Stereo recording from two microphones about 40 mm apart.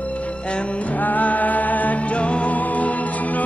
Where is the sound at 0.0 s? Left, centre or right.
Left.